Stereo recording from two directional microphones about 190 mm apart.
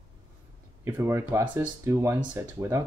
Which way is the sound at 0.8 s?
15° right (ahead or behind).